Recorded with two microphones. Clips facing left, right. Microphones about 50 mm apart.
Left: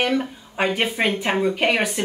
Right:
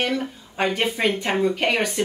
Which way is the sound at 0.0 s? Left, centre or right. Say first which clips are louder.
Left 3 dB; centre.